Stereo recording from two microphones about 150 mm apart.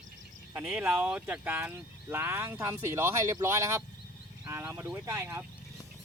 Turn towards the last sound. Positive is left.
turn(degrees=-20)  # may be behind; listen again after turning